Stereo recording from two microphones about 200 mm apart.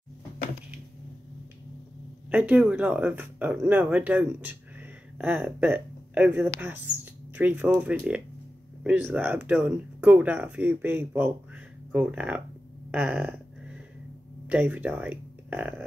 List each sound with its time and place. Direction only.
2.3 s speech: 5° right (ahead or behind)
12.9 s a sound: 5° right (ahead or behind)
14.5 s speech: 5° right (ahead or behind)